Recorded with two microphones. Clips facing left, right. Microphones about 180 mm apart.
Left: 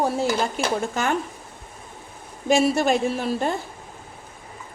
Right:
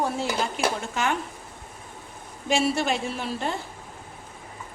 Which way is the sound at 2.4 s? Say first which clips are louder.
Left 5 dB; 45° left (ahead or behind).